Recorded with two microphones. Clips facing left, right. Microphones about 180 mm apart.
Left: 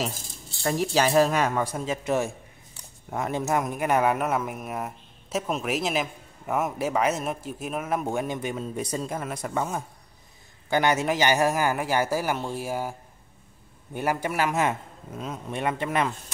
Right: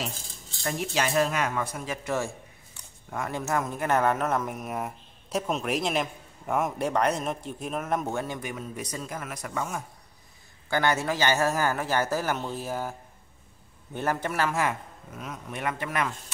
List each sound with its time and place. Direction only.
0.7 s speech: 35° left (ahead or behind)
10.7 s speech: 15° left (ahead or behind)
13.9 s a man's voice: 10° left (ahead or behind); by 16.1 s 25° left (ahead or behind)